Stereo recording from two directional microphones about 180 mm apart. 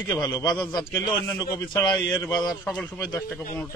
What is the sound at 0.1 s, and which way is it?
Speech, 20° left (ahead or behind).